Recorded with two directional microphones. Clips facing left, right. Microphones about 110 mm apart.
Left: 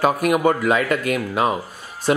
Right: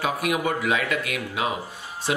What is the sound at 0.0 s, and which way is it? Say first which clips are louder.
Speech: left 7 dB; 45° left (ahead or behind).